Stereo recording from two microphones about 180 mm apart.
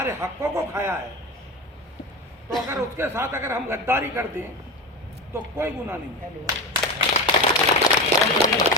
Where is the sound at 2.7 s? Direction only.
15° right (ahead or behind).